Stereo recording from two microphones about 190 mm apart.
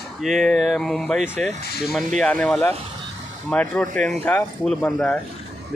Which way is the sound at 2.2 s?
5° left (ahead or behind).